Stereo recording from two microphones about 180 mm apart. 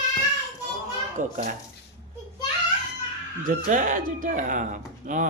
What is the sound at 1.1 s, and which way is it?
Speech, 50° right (ahead or behind).